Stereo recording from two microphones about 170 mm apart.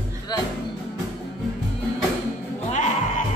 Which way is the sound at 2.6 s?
45° left (ahead or behind).